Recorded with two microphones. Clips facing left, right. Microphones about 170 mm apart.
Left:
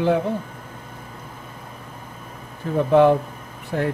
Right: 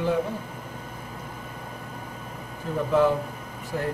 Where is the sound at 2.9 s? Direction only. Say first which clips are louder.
Left 6 dB; 65° left (ahead or behind).